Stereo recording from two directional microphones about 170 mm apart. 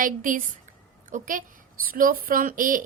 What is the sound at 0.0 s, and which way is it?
A woman's voice, 55° right (ahead or behind).